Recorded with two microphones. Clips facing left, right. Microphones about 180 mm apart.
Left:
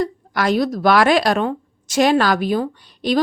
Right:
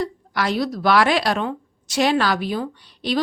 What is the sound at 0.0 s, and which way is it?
Speech, 45° left (ahead or behind).